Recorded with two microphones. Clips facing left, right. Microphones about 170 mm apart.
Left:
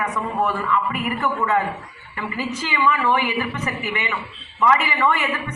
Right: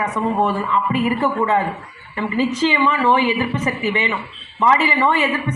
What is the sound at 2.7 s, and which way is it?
A man's voice, 20° right (ahead or behind).